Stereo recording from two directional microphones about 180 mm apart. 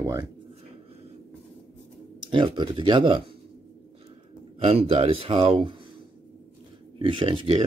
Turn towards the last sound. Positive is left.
turn(degrees=-30)  # may be behind; listen again after turning